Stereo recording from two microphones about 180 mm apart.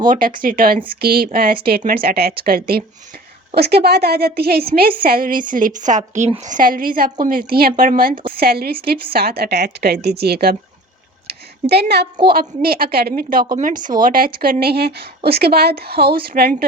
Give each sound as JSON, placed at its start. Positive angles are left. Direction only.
{"t": 0.1, "sound": "a woman's voice", "side_deg": -50}
{"t": 11.3, "sound": "a sound", "side_deg": -65}
{"t": 12.2, "sound": "a woman's voice", "side_deg": -55}